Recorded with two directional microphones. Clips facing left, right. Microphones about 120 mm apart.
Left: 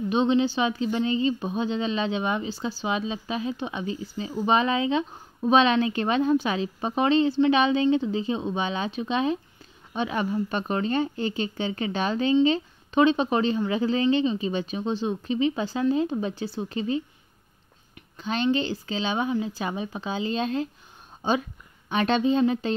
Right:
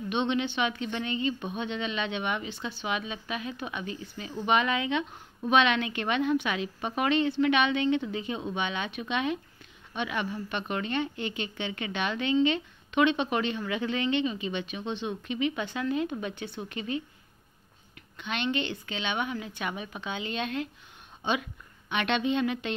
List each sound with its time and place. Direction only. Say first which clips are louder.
0.1 s a woman's voice: left 6 dB; 30° left (ahead or behind)
18.1 s a woman's voice: left 6 dB; 35° left (ahead or behind)